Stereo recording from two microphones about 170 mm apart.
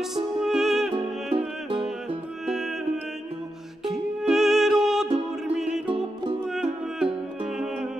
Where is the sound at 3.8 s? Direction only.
Centre (ahead or behind).